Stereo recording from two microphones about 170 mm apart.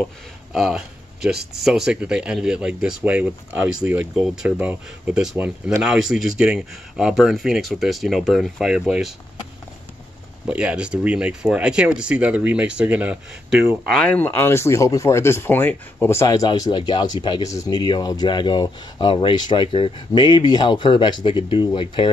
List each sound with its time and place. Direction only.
0.0 s a sound: centre (ahead or behind)
1.5 s speech: 5° right (ahead or behind)
10.4 s speech: 5° right (ahead or behind); by 22.1 s 30° left (ahead or behind)